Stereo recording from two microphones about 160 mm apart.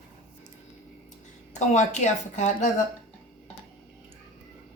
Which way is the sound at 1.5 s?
45° left (ahead or behind).